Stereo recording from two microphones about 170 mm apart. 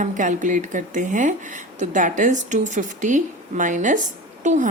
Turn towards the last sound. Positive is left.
turn(degrees=-45)  # may be behind; listen again after turning